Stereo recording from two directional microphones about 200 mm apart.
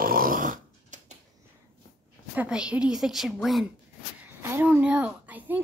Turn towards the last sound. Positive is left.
turn(degrees=-10)  # may be behind; listen again after turning